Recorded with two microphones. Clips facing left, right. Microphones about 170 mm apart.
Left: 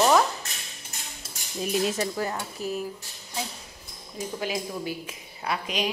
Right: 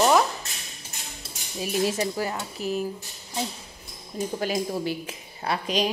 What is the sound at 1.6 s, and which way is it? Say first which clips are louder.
Dishes: right 1 dB; 5° right (ahead or behind).